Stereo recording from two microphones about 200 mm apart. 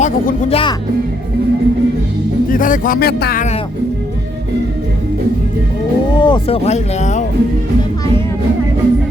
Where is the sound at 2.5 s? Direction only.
40° left (ahead or behind).